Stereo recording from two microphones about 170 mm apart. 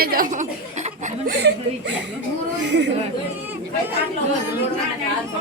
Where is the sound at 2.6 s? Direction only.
90° right.